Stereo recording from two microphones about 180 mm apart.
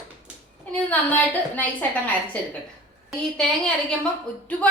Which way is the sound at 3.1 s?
5° left (ahead or behind).